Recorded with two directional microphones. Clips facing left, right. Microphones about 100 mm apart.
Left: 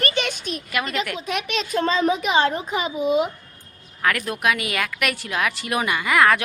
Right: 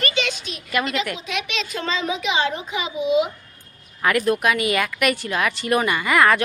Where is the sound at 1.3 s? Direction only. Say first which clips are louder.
Left 2 dB; 45° left (ahead or behind).